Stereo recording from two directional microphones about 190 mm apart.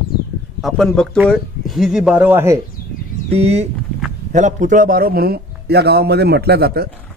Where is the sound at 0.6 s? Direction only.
Centre (ahead or behind).